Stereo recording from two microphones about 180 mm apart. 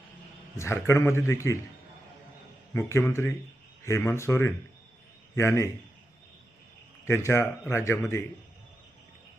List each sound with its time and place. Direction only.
0.5 s speech: 15° left (ahead or behind)
2.7 s speech: 15° left (ahead or behind)
7.0 s speech: 15° left (ahead or behind)